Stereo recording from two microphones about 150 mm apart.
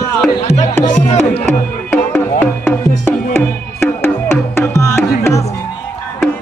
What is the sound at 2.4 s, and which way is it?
Music, 10° left (ahead or behind).